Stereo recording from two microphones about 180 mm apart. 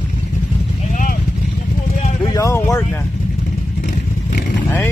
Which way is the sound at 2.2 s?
15° left (ahead or behind).